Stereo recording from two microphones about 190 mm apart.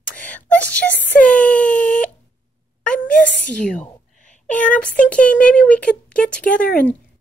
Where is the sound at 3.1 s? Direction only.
45° left (ahead or behind).